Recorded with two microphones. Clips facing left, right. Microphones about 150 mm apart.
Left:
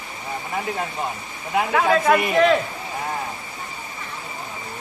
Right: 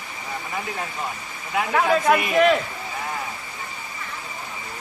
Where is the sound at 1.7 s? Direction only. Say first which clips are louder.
Left 1 dB; centre (ahead or behind).